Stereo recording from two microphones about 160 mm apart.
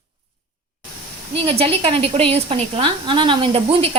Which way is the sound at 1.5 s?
35° right (ahead or behind).